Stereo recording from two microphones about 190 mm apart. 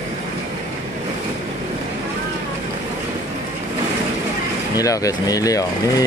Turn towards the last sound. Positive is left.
turn(degrees=20)  # may be behind; listen again after turning